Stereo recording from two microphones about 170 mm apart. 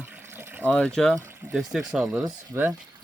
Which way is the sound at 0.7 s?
5° left (ahead or behind).